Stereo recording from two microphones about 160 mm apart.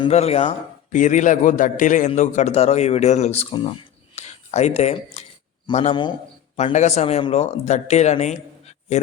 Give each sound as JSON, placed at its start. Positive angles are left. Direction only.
{"t": 0.1, "sound": "speech", "side_deg": 40}
{"t": 0.9, "sound": "a man's voice", "side_deg": 50}
{"t": 4.1, "sound": "a sound", "side_deg": 45}
{"t": 5.7, "sound": "a man's voice", "side_deg": 30}
{"t": 6.6, "sound": "a man's voice", "side_deg": 45}